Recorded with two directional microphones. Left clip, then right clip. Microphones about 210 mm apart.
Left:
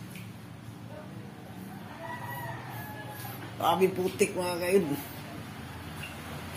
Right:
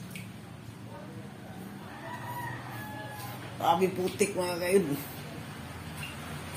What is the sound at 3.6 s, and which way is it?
Speech, 10° left (ahead or behind).